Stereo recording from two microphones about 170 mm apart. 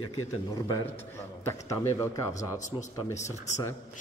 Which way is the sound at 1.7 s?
20° left (ahead or behind).